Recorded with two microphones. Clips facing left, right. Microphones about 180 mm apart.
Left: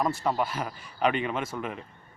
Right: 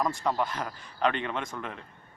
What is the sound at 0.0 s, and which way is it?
Speech, 5° left (ahead or behind).